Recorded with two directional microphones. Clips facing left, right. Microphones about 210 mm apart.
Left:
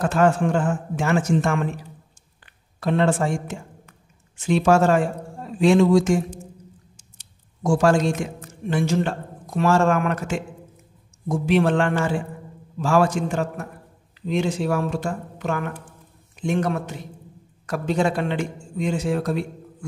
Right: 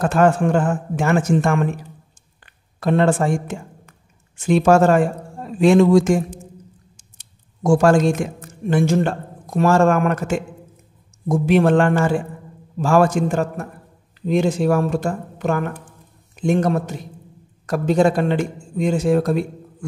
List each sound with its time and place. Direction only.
0.1 s a man's voice: 55° right (ahead or behind)